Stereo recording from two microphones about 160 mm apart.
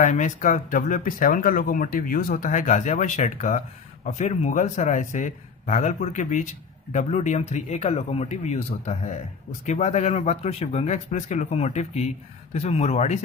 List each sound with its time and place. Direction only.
0.0 s speech: 50° left (ahead or behind)